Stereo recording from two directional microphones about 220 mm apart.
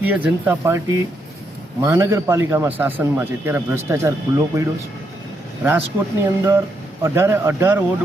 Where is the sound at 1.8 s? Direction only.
15° right (ahead or behind).